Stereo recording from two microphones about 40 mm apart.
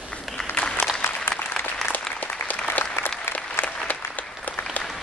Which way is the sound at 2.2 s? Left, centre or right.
Left.